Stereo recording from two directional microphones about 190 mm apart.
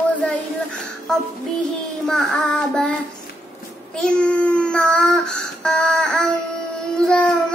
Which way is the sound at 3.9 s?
5° left (ahead or behind).